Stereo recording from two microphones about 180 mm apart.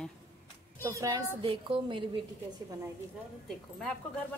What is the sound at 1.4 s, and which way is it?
Speech, 30° right (ahead or behind).